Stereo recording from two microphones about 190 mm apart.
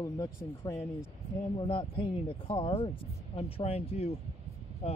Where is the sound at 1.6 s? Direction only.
30° left (ahead or behind).